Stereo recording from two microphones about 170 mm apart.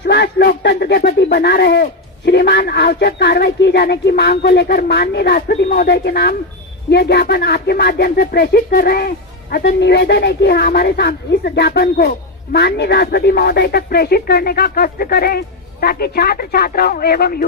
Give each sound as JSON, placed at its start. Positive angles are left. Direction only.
{"t": 0.0, "sound": "speech", "side_deg": 80}